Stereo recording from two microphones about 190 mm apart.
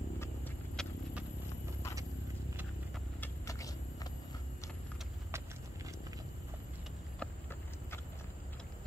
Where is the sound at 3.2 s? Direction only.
15° left (ahead or behind).